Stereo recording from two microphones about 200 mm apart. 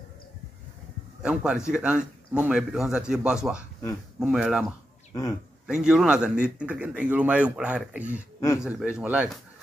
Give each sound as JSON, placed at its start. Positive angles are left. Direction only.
{"t": 1.2, "sound": "speech", "side_deg": -5}
{"t": 8.4, "sound": "a man's voice", "side_deg": 15}
{"t": 8.6, "sound": "speech", "side_deg": -5}